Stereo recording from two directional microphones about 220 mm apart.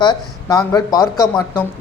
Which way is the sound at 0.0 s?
20° left (ahead or behind).